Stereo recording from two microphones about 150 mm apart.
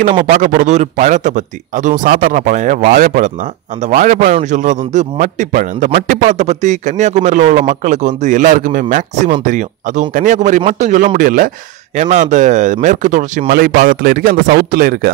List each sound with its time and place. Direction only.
0.3 s a man's voice: 60° right (ahead or behind)
13.5 s a man's voice: 70° right (ahead or behind)